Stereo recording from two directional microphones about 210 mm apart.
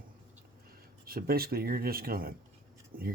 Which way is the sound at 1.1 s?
45° right (ahead or behind).